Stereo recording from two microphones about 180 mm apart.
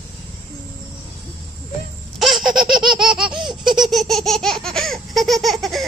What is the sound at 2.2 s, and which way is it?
Baby laughter, centre (ahead or behind).